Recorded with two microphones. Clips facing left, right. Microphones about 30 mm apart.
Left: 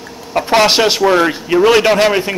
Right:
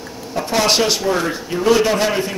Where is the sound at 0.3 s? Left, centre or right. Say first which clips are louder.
Left 7 dB; left.